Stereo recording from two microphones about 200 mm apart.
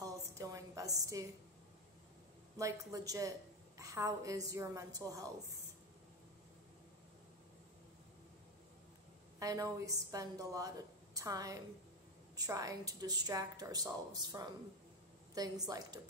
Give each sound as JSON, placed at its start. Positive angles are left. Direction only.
{"t": 0.0, "sound": "a sound", "side_deg": -15}
{"t": 2.5, "sound": "a woman's voice", "side_deg": -15}
{"t": 9.4, "sound": "a woman's voice", "side_deg": -15}